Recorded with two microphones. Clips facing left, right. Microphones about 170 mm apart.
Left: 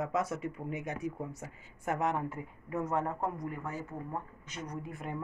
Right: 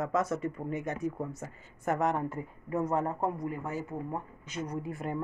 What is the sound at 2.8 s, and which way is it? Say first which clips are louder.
Speech: right 3 dB; 35° right (ahead or behind).